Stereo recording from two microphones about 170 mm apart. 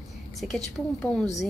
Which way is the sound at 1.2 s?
40° left (ahead or behind).